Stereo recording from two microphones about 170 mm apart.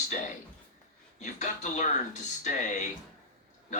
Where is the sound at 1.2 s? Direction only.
45° left (ahead or behind).